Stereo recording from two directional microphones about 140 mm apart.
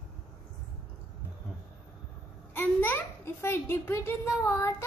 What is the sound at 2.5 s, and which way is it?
A woman's voice, 15° left (ahead or behind).